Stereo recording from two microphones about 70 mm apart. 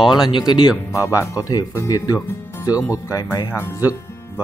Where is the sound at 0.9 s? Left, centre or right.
Left.